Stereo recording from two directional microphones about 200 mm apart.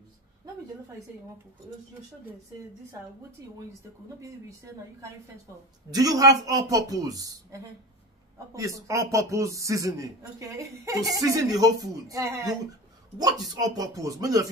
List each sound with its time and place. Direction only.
4.2 s speech: 15° right (ahead or behind)